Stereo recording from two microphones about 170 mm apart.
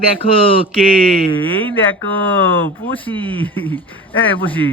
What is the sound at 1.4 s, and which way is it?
Speech, 10° left (ahead or behind).